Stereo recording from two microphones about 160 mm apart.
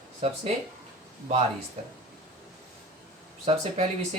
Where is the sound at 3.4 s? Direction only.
40° right (ahead or behind).